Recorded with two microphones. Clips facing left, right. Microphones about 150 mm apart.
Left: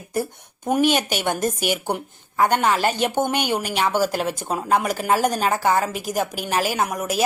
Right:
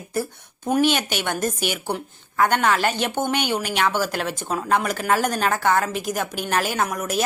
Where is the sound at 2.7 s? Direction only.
35° left (ahead or behind).